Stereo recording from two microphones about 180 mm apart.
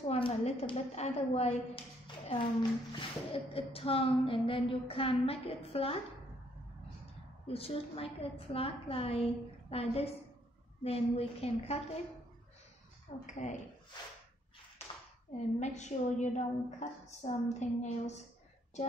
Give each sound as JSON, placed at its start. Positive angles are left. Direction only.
{"t": 0.0, "sound": "speech", "side_deg": 35}
{"t": 2.0, "sound": "a sound", "side_deg": 30}
{"t": 2.9, "sound": "speech", "side_deg": 30}
{"t": 7.4, "sound": "speech", "side_deg": 30}
{"t": 13.3, "sound": "speech", "side_deg": 40}
{"t": 15.3, "sound": "speech", "side_deg": 40}